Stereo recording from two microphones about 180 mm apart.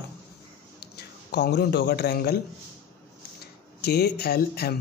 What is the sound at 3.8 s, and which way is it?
Speech, 60° left (ahead or behind).